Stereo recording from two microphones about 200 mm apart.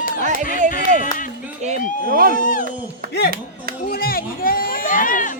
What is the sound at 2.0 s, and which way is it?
Speech, 45° right (ahead or behind).